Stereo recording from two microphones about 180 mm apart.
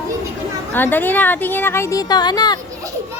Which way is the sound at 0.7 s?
10° left (ahead or behind).